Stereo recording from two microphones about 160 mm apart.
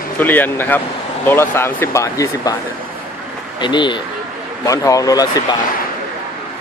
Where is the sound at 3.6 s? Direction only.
30° left (ahead or behind).